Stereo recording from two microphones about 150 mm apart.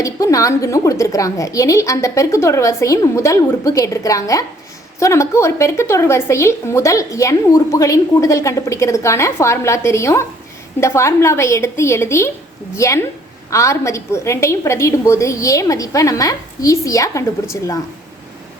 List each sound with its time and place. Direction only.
0.0 s speech: 20° left (ahead or behind)